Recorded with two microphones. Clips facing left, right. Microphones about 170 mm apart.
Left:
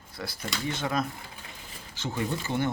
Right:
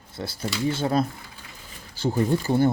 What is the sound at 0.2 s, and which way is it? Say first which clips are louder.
Speech: right 7 dB; 25° right (ahead or behind).